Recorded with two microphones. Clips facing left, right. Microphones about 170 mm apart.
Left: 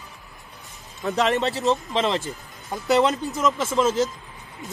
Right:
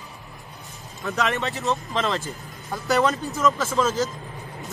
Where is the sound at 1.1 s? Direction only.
30° left (ahead or behind).